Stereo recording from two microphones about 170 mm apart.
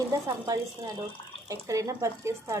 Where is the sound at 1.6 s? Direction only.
20° right (ahead or behind).